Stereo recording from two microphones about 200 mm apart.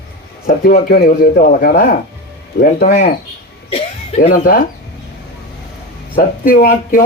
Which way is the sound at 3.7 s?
30° left (ahead or behind).